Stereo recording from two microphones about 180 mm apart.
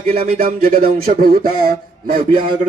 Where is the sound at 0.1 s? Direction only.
55° right (ahead or behind).